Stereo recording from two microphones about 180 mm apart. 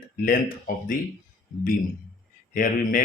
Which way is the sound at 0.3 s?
50° left (ahead or behind).